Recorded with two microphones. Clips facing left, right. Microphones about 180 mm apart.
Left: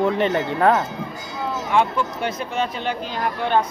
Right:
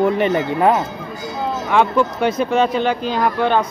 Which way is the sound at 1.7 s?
90° right.